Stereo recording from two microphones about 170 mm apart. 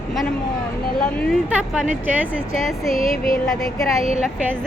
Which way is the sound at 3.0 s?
35° right (ahead or behind).